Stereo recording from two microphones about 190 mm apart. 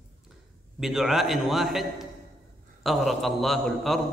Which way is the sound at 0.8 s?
Centre (ahead or behind).